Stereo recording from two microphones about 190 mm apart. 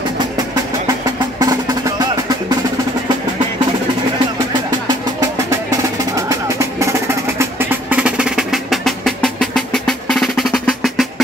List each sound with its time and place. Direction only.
1.4 s music: 20° right (ahead or behind)
4.8 s music: 20° right (ahead or behind); by 11.2 s centre (ahead or behind)